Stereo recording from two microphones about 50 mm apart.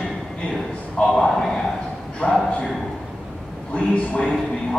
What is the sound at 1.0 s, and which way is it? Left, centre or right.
Speech, centre.